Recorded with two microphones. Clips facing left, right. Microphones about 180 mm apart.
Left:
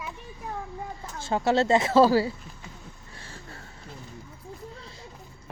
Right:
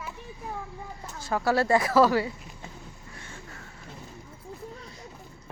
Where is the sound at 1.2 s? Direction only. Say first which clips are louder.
Left 2 dB; 25° left (ahead or behind).